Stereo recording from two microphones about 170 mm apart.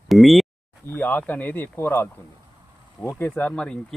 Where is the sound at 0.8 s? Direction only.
10° left (ahead or behind).